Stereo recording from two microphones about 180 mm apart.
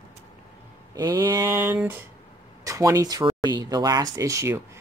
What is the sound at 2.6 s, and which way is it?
Speech, 20° right (ahead or behind).